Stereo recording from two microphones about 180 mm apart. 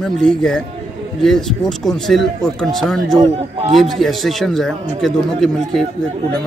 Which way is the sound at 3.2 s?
30° right (ahead or behind).